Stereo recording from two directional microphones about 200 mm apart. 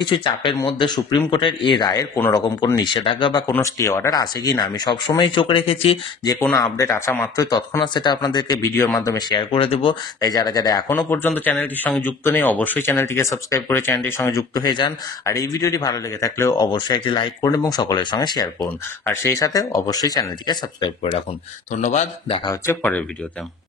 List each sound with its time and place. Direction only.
0.0 s speech: 25° left (ahead or behind)
6.4 s speech: 15° left (ahead or behind)
21.8 s speech: 35° left (ahead or behind)
22.4 s speech: 15° left (ahead or behind)